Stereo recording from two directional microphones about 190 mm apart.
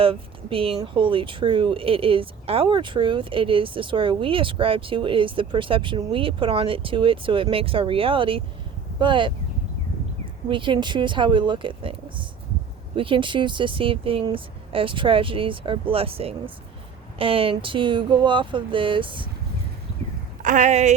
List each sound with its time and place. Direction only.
0.0 s speech: 30° right (ahead or behind)
10.5 s speech: 25° right (ahead or behind)
13.0 s speech: 25° right (ahead or behind)
20.4 s speech: 40° right (ahead or behind)